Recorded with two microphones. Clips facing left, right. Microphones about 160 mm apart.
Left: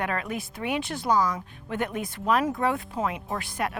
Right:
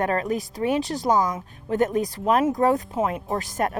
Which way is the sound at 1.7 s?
40° right (ahead or behind).